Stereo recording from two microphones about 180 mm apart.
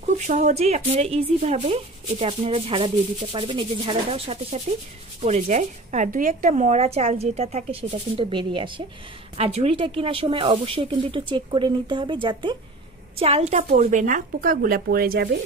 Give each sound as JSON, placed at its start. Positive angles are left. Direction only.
{"t": 0.3, "sound": "speech", "side_deg": -40}
{"t": 13.2, "sound": "a woman's voice", "side_deg": -35}